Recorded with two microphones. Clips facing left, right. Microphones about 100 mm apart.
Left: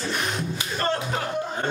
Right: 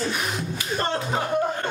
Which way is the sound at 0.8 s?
25° right (ahead or behind).